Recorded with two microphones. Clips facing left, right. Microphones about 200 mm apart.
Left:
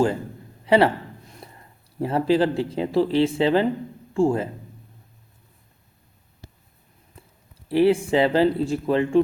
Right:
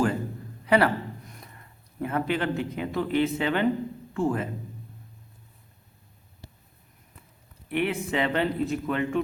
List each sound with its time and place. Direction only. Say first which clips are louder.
0.6 s a sound: left 4 dB; 25° left (ahead or behind)
1.3 s a man's voice: left 4 dB; 30° left (ahead or behind)
7.7 s speech: left 9 dB; 30° left (ahead or behind)